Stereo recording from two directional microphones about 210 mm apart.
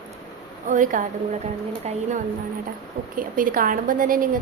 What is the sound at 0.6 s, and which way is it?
A woman's voice, 40° right (ahead or behind).